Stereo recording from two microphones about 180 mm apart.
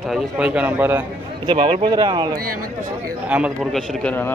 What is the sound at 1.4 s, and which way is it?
Speech, 30° right (ahead or behind).